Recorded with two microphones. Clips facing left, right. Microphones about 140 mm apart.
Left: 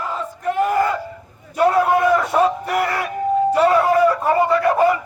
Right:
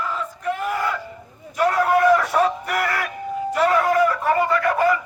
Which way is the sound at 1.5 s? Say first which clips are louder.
Left 3 dB; 25° left (ahead or behind).